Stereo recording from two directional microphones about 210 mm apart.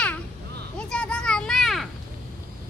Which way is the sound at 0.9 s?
5° left (ahead or behind).